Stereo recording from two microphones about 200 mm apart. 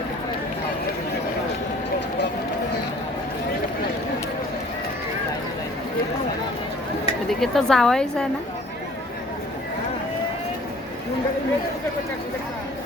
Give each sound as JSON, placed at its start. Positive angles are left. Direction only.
{"t": 7.3, "sound": "a woman's voice", "side_deg": 0}